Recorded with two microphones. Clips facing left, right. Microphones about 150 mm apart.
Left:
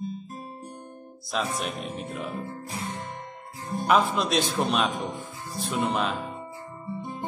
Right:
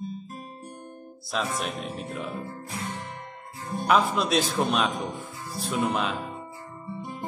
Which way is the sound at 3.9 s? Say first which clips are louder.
Even; centre (ahead or behind).